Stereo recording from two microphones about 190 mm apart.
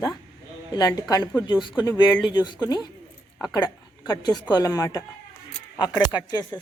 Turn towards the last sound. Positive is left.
turn(degrees=20)  # may be behind; listen again after turning